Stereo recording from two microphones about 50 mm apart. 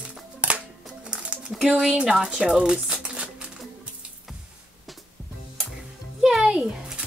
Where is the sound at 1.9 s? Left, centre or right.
Right.